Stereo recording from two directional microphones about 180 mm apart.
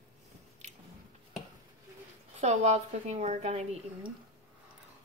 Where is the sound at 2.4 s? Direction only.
40° right (ahead or behind).